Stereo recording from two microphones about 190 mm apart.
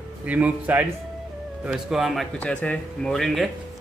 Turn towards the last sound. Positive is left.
turn(degrees=0)  # may be behind; listen again after turning